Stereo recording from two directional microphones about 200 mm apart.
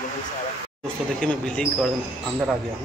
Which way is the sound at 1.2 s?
5° left (ahead or behind).